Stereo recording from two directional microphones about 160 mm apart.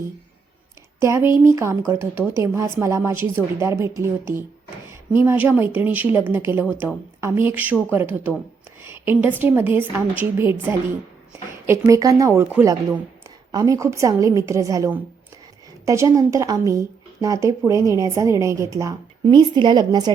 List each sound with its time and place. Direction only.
0.9 s speech: 15° right (ahead or behind)
13.5 s a woman's voice: 20° right (ahead or behind)